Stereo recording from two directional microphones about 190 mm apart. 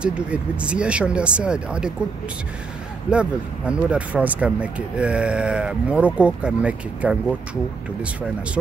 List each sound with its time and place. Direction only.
0.0 s speech: 5° right (ahead or behind)
3.1 s speech: 5° right (ahead or behind)